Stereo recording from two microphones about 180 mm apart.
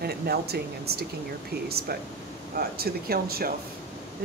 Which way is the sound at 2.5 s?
55° right (ahead or behind).